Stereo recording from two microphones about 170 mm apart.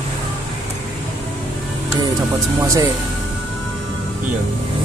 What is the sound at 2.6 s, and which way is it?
Speech, 20° right (ahead or behind).